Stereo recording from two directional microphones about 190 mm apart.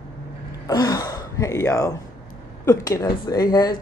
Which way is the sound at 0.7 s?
20° left (ahead or behind).